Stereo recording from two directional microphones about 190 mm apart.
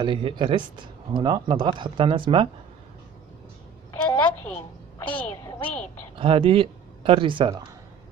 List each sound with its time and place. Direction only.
0.0 s speech: 25° right (ahead or behind)
4.2 s a sound: 10° left (ahead or behind)
6.1 s speech: 30° right (ahead or behind)